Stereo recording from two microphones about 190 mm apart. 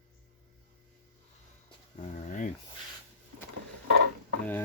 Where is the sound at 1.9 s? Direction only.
40° left (ahead or behind).